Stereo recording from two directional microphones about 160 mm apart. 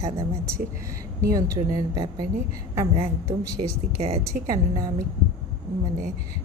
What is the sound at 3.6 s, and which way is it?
Speech, 40° right (ahead or behind).